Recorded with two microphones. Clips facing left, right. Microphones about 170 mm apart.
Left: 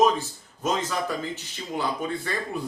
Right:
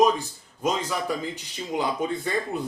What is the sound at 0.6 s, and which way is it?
Speech, 15° right (ahead or behind).